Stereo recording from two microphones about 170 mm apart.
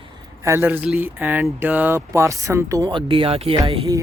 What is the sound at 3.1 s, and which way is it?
Speech, 35° right (ahead or behind).